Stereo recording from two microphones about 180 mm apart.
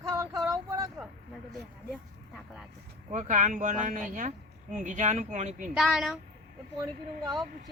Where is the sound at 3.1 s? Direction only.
45° right (ahead or behind).